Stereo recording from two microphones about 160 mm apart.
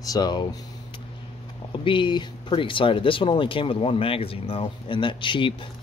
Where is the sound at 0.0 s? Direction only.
25° left (ahead or behind).